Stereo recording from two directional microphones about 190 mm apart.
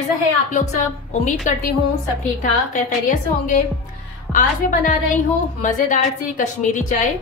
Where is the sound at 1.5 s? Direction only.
40° left (ahead or behind).